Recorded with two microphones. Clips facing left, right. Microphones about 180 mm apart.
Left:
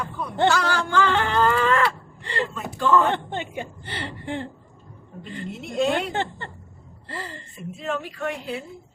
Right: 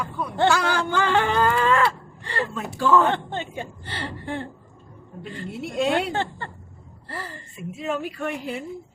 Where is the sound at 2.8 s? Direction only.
10° right (ahead or behind).